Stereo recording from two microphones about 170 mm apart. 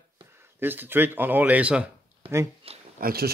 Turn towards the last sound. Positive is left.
turn(degrees=-60)  # may be behind; listen again after turning